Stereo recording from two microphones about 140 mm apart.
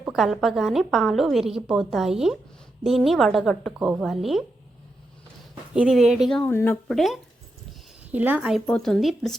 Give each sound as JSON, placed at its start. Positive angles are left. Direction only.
{"t": 0.1, "sound": "a woman's voice", "side_deg": 0}
{"t": 5.7, "sound": "a woman's voice", "side_deg": -5}
{"t": 6.4, "sound": "speech", "side_deg": 15}
{"t": 6.8, "sound": "a woman's voice", "side_deg": 0}
{"t": 8.1, "sound": "a woman's voice", "side_deg": -10}